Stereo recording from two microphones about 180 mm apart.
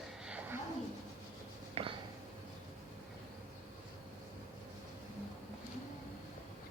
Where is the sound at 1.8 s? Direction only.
35° right (ahead or behind).